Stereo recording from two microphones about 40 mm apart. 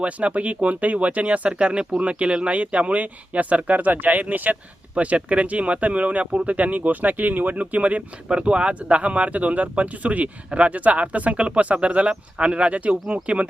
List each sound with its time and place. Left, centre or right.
0.0 s speech: right
1.5 s speech: right
4.9 s speech: right